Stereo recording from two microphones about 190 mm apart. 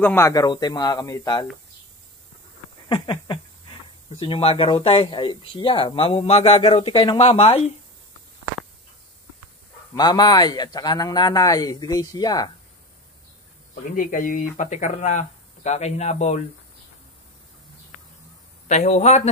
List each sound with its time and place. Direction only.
0.0 s speech: 10° left (ahead or behind)
2.9 s speech: 25° left (ahead or behind)
9.9 s speech: 20° left (ahead or behind)
13.9 s speech: 45° left (ahead or behind)
18.7 s speech: 35° left (ahead or behind)